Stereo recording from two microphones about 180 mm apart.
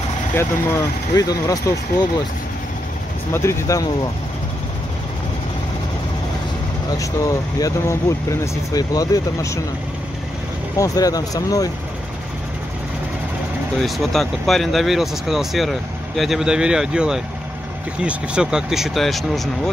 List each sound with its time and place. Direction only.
0.3 s speech: 15° left (ahead or behind)
3.3 s speech: 15° left (ahead or behind)
7.0 s speech: 20° left (ahead or behind)
10.8 s speech: 20° left (ahead or behind)
13.7 s speech: centre (ahead or behind)